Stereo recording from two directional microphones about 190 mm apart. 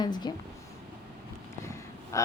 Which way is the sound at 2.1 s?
15° left (ahead or behind).